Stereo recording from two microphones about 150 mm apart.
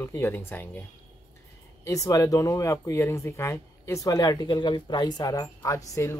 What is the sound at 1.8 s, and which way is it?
Speech, 20° left (ahead or behind).